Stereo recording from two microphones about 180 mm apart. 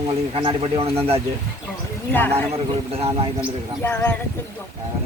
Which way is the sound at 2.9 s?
35° right (ahead or behind).